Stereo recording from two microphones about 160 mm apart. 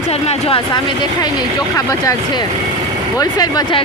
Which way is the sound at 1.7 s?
20° left (ahead or behind).